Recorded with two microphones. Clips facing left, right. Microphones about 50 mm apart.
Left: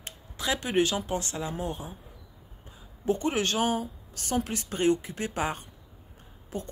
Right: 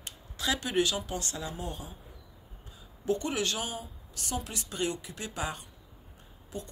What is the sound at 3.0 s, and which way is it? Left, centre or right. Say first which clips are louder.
Speech: left 3 dB; left.